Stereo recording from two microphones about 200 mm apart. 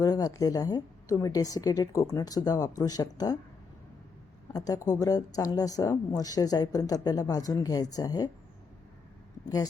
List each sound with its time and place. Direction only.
0.0 s a woman's voice: 20° left (ahead or behind)
4.5 s a woman's voice: 20° left (ahead or behind)